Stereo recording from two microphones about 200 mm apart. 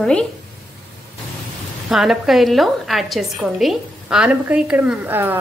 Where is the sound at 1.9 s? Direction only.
Centre (ahead or behind).